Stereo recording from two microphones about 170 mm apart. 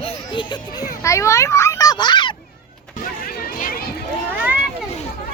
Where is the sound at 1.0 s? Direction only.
15° left (ahead or behind).